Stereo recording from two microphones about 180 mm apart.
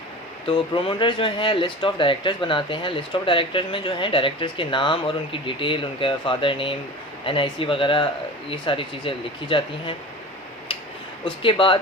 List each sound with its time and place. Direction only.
0.4 s speech: 25° left (ahead or behind)
11.4 s speech: 30° left (ahead or behind)